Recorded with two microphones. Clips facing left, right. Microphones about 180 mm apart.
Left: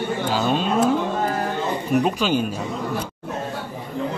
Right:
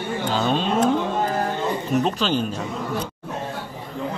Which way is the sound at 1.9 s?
10° left (ahead or behind).